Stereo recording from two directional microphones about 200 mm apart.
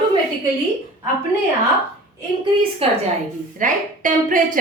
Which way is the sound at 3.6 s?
40° right (ahead or behind).